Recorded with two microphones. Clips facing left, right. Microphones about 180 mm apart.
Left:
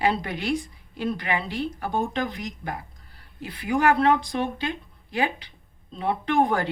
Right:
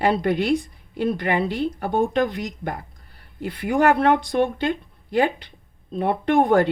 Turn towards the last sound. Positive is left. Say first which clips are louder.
# right 5 dB
turn(degrees=-60)  # may be behind; listen again after turning